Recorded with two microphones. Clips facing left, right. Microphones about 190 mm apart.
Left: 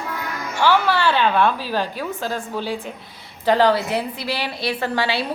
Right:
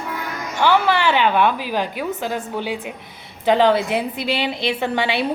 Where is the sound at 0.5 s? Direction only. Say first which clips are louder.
Right 1 dB; 20° right (ahead or behind).